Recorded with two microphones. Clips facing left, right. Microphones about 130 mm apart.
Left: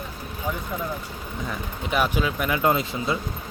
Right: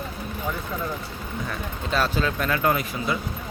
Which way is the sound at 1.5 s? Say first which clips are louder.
Left 1 dB; 15° left (ahead or behind).